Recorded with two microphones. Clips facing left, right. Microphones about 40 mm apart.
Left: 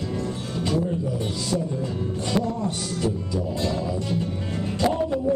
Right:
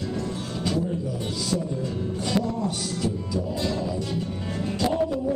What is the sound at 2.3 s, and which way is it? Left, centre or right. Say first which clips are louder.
Speech: left 1 dB; centre.